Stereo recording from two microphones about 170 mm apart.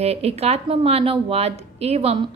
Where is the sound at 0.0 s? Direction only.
35° right (ahead or behind).